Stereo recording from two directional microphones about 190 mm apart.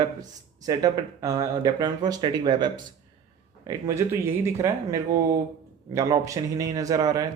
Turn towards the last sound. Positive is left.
turn(degrees=-20)  # may be behind; listen again after turning